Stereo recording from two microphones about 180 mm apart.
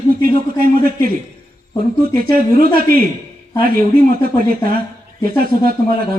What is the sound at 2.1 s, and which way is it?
Speech, 55° right (ahead or behind).